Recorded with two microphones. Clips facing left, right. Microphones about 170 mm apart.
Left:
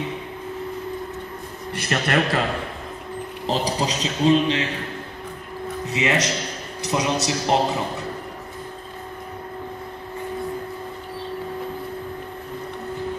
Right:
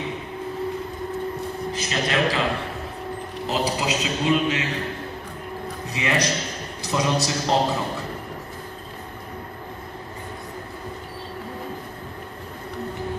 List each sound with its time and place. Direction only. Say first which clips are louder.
1.7 s a man's voice: left 4 dB; 60° left (ahead or behind)
3.4 s speech: left 1 dB; 35° left (ahead or behind)
5.9 s a man's voice: left 2 dB; 20° left (ahead or behind)